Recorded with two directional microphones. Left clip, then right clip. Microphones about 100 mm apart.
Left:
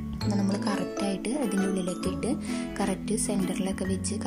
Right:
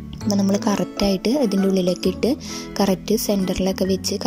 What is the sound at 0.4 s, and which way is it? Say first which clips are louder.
A woman's voice: right 9 dB; 45° right (ahead or behind).